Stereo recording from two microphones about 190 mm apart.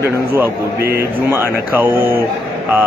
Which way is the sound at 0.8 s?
55° right (ahead or behind).